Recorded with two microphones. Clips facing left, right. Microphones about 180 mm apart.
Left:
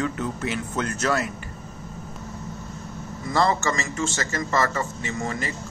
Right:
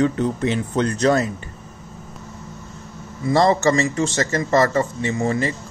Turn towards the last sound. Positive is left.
turn(degrees=-35)  # may be behind; listen again after turning